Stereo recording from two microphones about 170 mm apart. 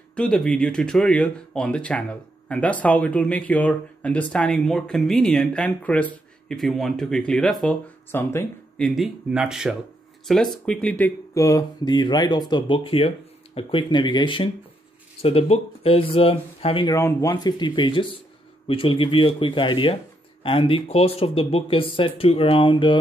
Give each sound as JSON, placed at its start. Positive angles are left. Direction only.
{"t": 0.1, "sound": "speech", "side_deg": 5}
{"t": 8.1, "sound": "speech", "side_deg": 15}
{"t": 8.8, "sound": "speech", "side_deg": 0}
{"t": 11.3, "sound": "speech", "side_deg": 20}
{"t": 16.9, "sound": "speech", "side_deg": 15}